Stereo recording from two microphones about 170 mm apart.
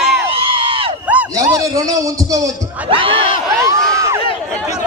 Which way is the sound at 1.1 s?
10° right (ahead or behind).